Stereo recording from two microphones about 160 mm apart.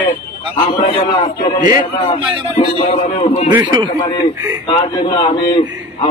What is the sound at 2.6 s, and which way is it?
Speech, 40° left (ahead or behind).